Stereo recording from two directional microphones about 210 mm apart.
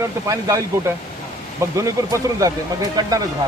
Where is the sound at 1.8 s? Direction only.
15° right (ahead or behind).